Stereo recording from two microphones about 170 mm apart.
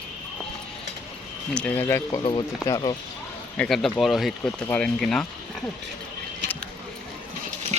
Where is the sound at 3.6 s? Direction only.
Centre (ahead or behind).